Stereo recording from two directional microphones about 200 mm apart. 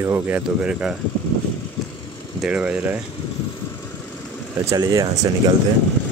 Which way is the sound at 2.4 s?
5° right (ahead or behind).